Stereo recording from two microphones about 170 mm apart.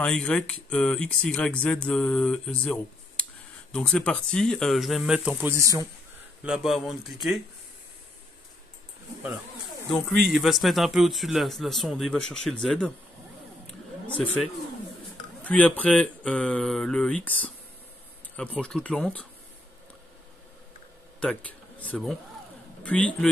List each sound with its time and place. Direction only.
0.0 s speech: 5° left (ahead or behind)
5.6 s speech: 20° right (ahead or behind)
6.4 s speech: centre (ahead or behind)
9.8 s speech: centre (ahead or behind)
15.4 s speech: 10° left (ahead or behind)
21.2 s speech: 5° left (ahead or behind)